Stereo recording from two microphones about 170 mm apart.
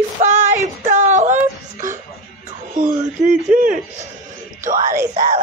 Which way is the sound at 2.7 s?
50° right (ahead or behind).